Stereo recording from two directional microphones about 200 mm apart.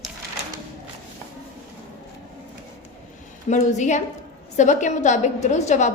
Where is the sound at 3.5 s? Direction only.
35° left (ahead or behind).